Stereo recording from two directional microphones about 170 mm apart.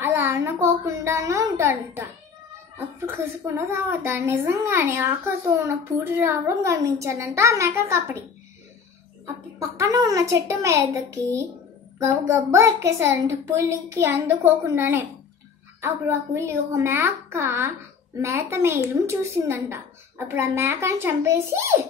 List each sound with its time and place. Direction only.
0.0 s a sound: 15° right (ahead or behind)
3.1 s a woman's voice: 15° right (ahead or behind)
9.2 s a woman's voice: 20° right (ahead or behind)